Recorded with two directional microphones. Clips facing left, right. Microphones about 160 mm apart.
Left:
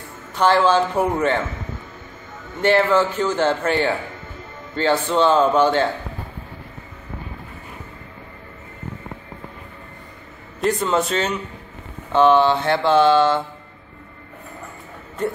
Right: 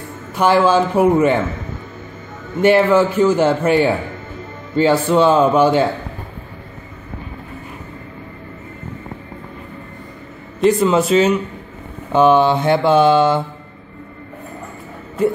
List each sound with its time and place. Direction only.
0.3 s a man's voice: 10° right (ahead or behind)
2.6 s a man's voice: 10° right (ahead or behind)
10.6 s a man's voice: 5° right (ahead or behind)